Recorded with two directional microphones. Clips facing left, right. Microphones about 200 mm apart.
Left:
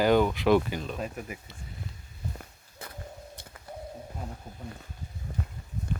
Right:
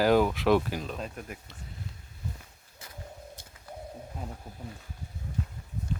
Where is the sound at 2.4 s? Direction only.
60° left (ahead or behind).